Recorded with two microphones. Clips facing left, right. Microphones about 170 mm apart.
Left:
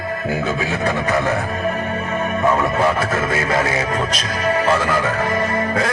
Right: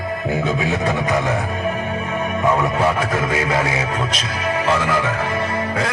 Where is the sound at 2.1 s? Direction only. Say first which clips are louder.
Left 1 dB; 10° right (ahead or behind).